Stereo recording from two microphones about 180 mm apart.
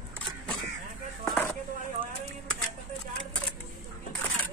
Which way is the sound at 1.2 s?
5° left (ahead or behind).